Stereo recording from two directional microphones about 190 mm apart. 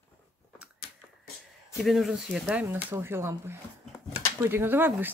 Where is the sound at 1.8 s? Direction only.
Centre (ahead or behind).